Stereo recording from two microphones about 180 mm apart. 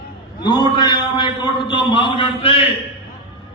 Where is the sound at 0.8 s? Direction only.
25° left (ahead or behind).